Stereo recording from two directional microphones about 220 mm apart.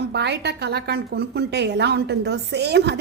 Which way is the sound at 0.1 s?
50° right (ahead or behind).